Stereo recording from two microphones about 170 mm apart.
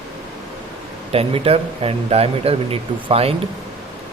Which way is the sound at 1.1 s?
35° right (ahead or behind).